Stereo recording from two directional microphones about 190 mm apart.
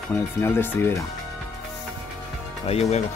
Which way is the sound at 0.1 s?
15° left (ahead or behind).